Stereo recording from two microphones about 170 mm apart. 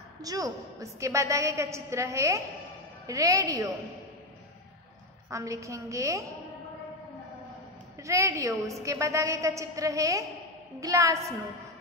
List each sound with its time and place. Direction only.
0.2 s a woman's voice: 20° right (ahead or behind)
5.3 s a woman's voice: 20° right (ahead or behind)
8.0 s a woman's voice: 20° right (ahead or behind)